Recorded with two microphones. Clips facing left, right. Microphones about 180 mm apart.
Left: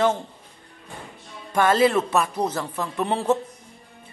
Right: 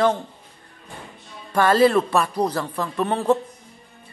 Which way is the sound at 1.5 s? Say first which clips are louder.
Right 2 dB; 15° left (ahead or behind).